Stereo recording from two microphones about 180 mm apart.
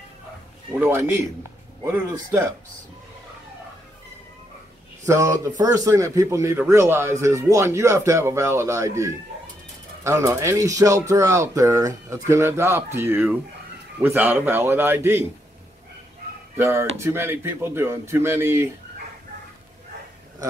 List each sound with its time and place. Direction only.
0.7 s speech: 10° right (ahead or behind)
5.0 s speech: 15° right (ahead or behind)
16.5 s speech: 15° right (ahead or behind)